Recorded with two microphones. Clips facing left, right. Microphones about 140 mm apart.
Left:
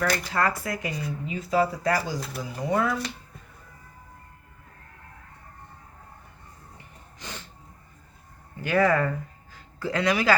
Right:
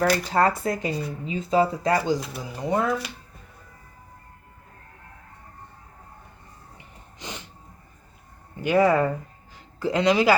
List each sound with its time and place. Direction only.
0.0 s speech: 30° right (ahead or behind)
6.7 s gasp: 20° right (ahead or behind)
8.6 s speech: 20° right (ahead or behind)